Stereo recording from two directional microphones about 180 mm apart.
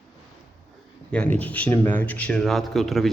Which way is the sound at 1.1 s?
5° left (ahead or behind).